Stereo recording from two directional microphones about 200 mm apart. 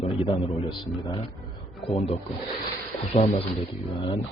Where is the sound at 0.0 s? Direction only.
30° left (ahead or behind).